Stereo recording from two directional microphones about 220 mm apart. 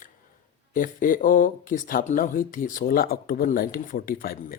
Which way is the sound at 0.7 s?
35° left (ahead or behind).